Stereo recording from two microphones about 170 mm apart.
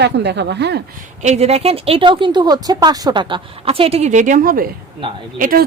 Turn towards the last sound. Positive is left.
turn(degrees=-55)  # may be behind; listen again after turning